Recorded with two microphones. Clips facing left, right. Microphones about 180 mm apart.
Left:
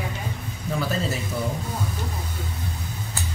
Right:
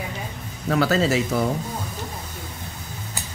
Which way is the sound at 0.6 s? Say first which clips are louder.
Right 7 dB; 80° right.